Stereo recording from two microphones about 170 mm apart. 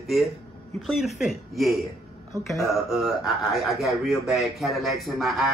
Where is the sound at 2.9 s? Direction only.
Centre (ahead or behind).